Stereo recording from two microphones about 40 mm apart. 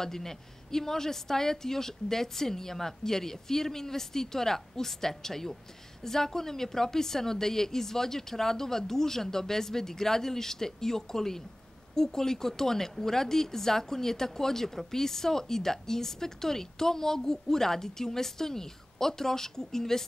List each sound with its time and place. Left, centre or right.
0.0 s a woman's voice: centre